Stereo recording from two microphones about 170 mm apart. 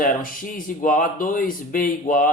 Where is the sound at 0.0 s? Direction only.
55° left (ahead or behind).